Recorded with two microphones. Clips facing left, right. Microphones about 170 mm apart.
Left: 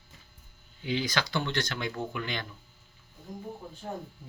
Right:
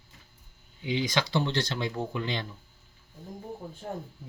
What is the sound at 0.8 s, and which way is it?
Speech, 20° right (ahead or behind).